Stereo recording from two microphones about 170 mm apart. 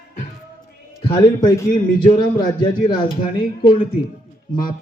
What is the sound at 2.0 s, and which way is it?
Speech, 25° left (ahead or behind).